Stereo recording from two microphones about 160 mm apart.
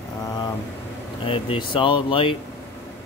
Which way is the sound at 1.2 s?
35° left (ahead or behind).